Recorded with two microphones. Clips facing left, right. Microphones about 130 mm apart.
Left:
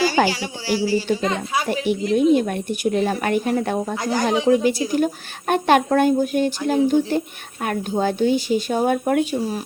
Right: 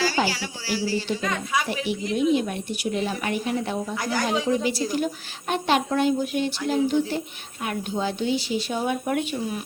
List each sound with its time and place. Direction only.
0.2 s a sound: 60° left (ahead or behind)
0.8 s speech: 15° left (ahead or behind)
1.2 s a woman's voice: 30° left (ahead or behind)
1.7 s speech: 50° left (ahead or behind)
3.9 s a woman's voice: 25° left (ahead or behind)
4.4 s speech: 50° left (ahead or behind)